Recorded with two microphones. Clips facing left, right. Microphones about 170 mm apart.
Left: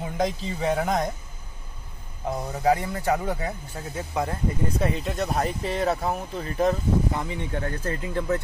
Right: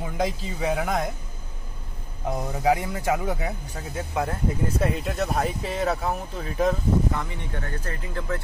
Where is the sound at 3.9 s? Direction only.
Centre (ahead or behind).